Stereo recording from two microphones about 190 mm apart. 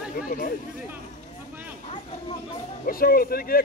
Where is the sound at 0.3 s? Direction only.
50° left (ahead or behind).